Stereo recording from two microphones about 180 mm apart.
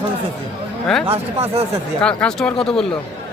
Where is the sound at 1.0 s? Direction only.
35° right (ahead or behind).